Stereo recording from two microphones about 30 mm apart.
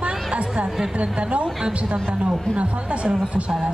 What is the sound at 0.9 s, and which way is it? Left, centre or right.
A woman's voice, right.